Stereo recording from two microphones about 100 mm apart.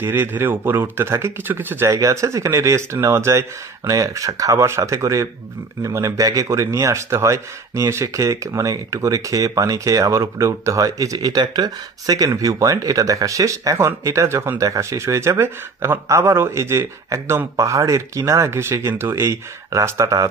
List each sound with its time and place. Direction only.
0.0 s speech: 20° right (ahead or behind)
1.9 s speech: 35° right (ahead or behind)